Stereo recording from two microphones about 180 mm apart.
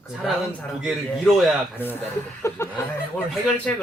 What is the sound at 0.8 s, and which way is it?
Speech, centre (ahead or behind).